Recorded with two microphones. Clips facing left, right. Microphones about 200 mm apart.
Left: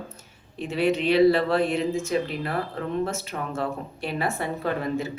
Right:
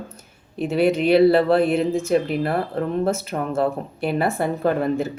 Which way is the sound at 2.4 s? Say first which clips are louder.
Right 6 dB; 35° right (ahead or behind).